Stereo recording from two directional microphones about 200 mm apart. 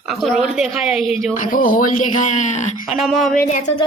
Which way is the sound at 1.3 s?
40° left (ahead or behind).